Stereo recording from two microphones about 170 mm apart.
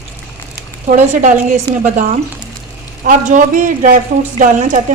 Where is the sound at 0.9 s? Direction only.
45° right (ahead or behind).